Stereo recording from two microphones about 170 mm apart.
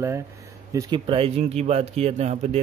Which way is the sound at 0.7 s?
25° right (ahead or behind).